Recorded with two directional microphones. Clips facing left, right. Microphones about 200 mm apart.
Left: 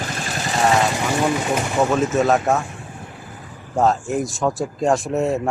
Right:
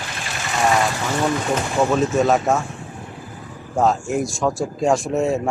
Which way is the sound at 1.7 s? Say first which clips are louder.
Even; 5° left (ahead or behind).